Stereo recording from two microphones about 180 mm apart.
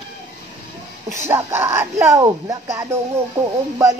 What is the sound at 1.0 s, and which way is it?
A woman's voice, 15° right (ahead or behind).